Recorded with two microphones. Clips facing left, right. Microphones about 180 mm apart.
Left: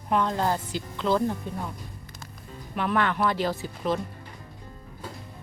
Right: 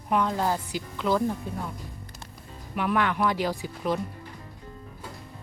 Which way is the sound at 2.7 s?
10° right (ahead or behind).